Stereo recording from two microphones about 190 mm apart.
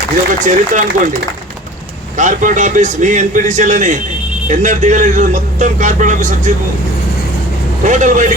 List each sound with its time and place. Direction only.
0.4 s a man's voice: 40° right (ahead or behind)
2.1 s a man's voice: 40° right (ahead or behind)
7.9 s a man's voice: 40° right (ahead or behind)